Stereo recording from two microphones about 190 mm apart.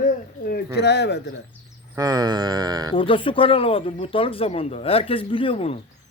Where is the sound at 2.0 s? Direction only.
20° right (ahead or behind).